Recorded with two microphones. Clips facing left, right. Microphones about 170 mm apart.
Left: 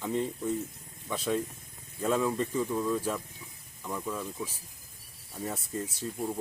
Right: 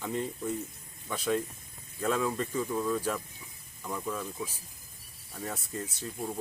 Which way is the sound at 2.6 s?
Centre (ahead or behind).